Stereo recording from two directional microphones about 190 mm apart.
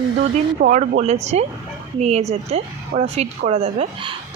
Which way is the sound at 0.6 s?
40° right (ahead or behind).